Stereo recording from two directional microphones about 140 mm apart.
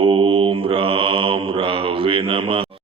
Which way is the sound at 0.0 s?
40° right (ahead or behind).